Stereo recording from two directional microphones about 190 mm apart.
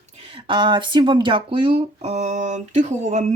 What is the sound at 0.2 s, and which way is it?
Speech, 25° right (ahead or behind).